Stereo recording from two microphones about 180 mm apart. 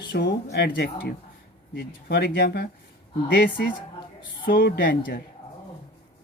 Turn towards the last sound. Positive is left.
turn(degrees=50)  # may be behind; listen again after turning